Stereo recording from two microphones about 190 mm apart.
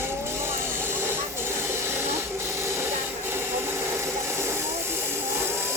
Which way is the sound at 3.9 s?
15° right (ahead or behind).